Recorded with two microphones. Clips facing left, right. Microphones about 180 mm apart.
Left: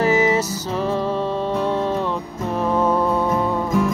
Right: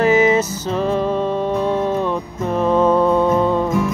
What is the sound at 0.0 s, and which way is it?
Music, 20° right (ahead or behind).